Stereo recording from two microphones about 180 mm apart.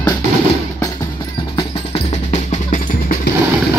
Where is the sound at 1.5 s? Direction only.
35° left (ahead or behind).